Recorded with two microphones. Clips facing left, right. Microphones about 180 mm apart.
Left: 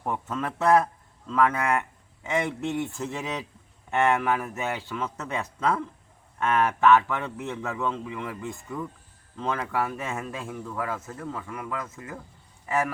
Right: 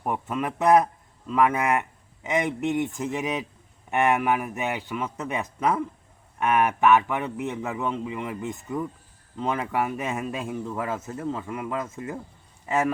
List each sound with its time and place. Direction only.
0.0 s a man's voice: 15° right (ahead or behind)